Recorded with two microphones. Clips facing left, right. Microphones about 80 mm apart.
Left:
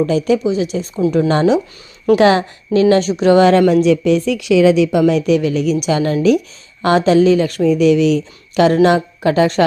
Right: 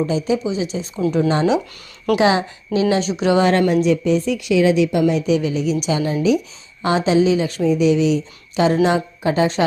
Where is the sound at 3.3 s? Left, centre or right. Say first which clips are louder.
Left 5 dB; left.